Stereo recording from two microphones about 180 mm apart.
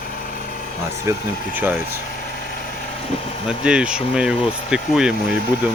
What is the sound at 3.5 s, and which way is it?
Speech, 5° right (ahead or behind).